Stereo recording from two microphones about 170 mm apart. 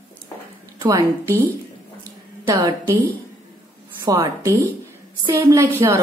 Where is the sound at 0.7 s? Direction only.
20° right (ahead or behind).